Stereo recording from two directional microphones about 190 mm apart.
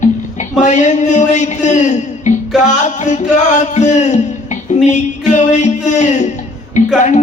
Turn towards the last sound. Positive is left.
turn(degrees=40)  # may be behind; listen again after turning